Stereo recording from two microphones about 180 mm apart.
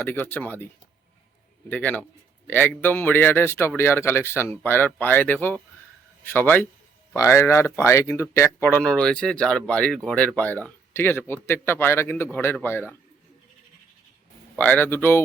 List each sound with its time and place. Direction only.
0.0 s speech: 10° left (ahead or behind)
1.7 s speech: 10° left (ahead or behind)
14.5 s speech: 10° left (ahead or behind)